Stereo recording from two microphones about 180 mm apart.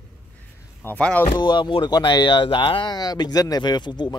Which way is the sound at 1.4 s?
25° left (ahead or behind).